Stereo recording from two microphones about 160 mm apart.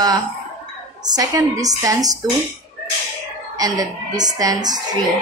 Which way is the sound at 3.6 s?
25° right (ahead or behind).